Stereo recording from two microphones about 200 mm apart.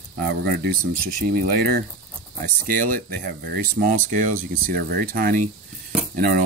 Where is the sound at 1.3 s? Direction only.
55° right (ahead or behind).